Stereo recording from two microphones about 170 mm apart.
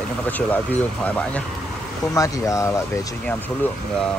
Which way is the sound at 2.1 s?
20° left (ahead or behind).